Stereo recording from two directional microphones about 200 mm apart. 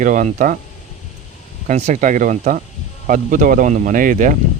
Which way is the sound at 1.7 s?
35° right (ahead or behind).